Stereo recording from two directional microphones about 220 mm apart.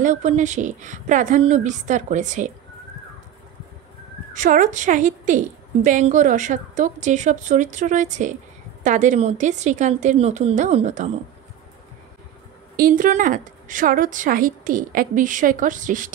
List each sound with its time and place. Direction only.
0.0 s a woman's voice: 35° right (ahead or behind)
4.3 s a woman's voice: 35° right (ahead or behind)
12.7 s a woman's voice: 40° right (ahead or behind)